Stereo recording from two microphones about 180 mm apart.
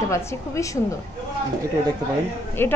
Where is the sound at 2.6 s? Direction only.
10° left (ahead or behind).